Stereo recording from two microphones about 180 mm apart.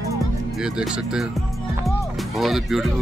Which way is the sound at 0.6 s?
5° right (ahead or behind).